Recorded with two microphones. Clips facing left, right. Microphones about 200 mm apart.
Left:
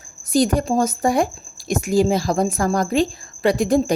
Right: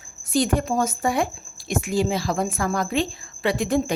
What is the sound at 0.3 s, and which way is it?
A woman's voice, 40° left (ahead or behind).